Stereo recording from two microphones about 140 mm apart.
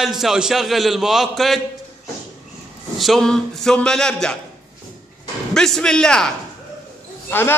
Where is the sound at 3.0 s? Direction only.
Centre (ahead or behind).